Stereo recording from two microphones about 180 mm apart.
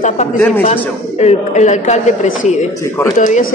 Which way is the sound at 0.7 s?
40° left (ahead or behind).